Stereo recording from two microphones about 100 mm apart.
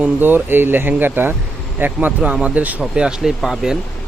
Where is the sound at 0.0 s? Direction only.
20° right (ahead or behind).